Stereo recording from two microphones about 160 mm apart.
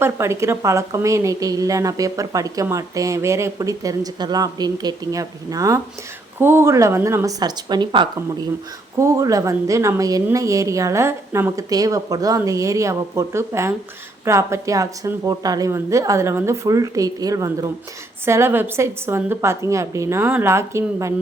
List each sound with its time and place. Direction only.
0.0 s a woman's voice: 15° right (ahead or behind)